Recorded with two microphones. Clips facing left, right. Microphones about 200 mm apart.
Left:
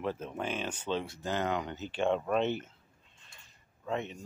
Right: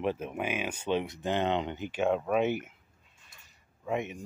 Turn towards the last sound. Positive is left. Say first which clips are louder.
# right 3 dB
turn(degrees=-10)  # may be behind; listen again after turning